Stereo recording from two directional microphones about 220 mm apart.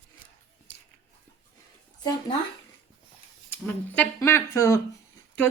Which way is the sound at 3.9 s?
10° left (ahead or behind).